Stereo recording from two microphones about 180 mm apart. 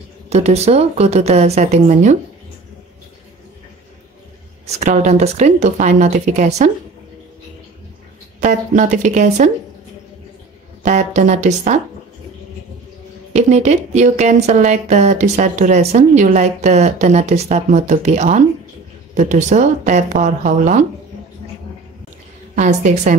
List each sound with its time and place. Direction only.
0.3 s speech: 35° right (ahead or behind)
4.6 s speech: 40° right (ahead or behind)
8.4 s speech: 45° right (ahead or behind)
10.8 s speech: 40° right (ahead or behind)
13.3 s speech: 40° right (ahead or behind)
22.6 s speech: 40° right (ahead or behind)